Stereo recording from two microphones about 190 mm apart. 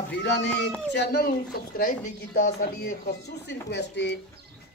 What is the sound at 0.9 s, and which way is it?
Speech, 55° left (ahead or behind).